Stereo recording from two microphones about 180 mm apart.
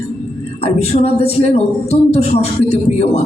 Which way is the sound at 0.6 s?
35° left (ahead or behind).